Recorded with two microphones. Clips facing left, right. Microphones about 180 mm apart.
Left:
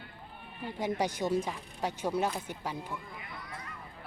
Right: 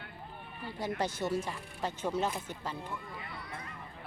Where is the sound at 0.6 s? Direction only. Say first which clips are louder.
Left 3 dB; 15° left (ahead or behind).